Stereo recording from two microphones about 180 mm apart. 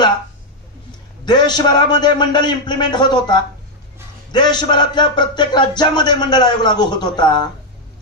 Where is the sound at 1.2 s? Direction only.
25° left (ahead or behind).